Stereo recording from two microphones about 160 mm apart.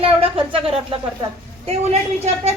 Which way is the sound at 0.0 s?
35° right (ahead or behind).